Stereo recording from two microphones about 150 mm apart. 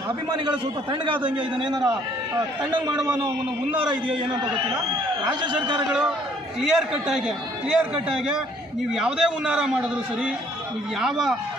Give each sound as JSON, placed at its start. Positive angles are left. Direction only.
{"t": 5.2, "sound": "a man's voice", "side_deg": -30}
{"t": 5.9, "sound": "a man's voice", "side_deg": -5}